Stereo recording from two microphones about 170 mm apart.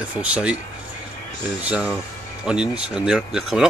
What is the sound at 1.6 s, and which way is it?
Speech, 5° right (ahead or behind).